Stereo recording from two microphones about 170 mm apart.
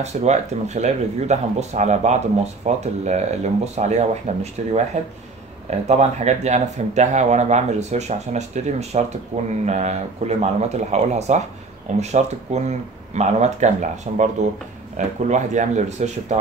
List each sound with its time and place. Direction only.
0.0 s speech: 40° right (ahead or behind)